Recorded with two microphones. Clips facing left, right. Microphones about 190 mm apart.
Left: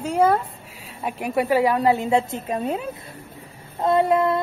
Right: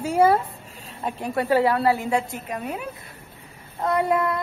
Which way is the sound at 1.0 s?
10° left (ahead or behind).